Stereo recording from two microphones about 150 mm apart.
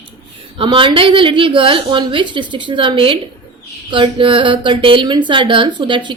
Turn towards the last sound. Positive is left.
turn(degrees=-30)  # may be behind; listen again after turning